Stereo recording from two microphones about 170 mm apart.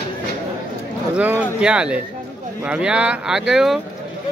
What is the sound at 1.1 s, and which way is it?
A man's voice, 10° right (ahead or behind).